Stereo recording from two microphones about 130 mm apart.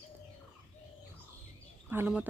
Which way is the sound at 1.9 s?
15° right (ahead or behind).